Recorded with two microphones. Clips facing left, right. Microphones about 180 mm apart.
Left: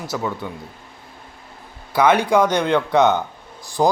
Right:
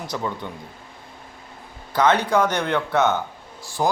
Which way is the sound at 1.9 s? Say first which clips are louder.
Left 3 dB; 10° left (ahead or behind).